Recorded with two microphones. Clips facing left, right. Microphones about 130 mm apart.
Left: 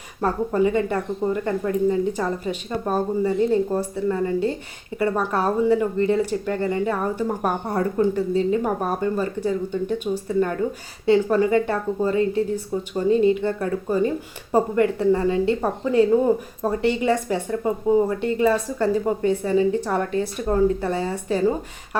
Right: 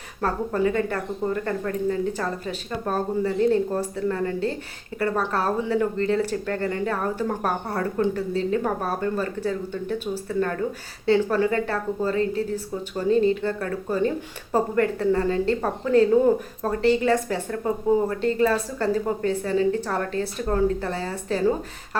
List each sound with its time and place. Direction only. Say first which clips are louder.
0.2 s speech: left 3 dB; 15° left (ahead or behind)